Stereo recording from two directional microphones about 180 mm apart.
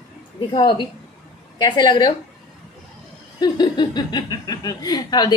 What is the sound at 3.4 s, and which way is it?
Speech, 25° left (ahead or behind).